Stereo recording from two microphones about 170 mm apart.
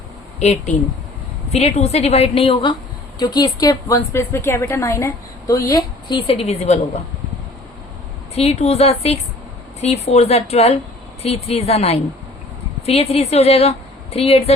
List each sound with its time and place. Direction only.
0.3 s a woman's voice: 40° left (ahead or behind); by 6.1 s 20° left (ahead or behind)
6.1 s a woman's voice: 35° left (ahead or behind)
8.4 s a woman's voice: 35° left (ahead or behind)